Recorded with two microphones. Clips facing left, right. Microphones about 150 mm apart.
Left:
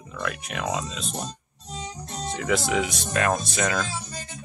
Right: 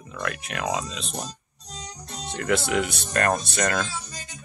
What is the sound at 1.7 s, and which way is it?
Music, 5° left (ahead or behind).